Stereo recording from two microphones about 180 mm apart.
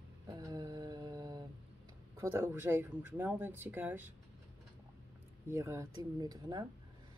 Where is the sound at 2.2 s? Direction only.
15° right (ahead or behind).